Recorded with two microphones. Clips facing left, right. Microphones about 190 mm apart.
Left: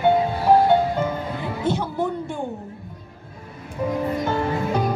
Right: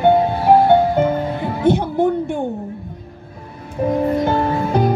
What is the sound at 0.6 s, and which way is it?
Music, 60° right (ahead or behind).